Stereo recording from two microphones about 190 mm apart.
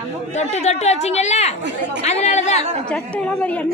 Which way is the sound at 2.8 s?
5° left (ahead or behind).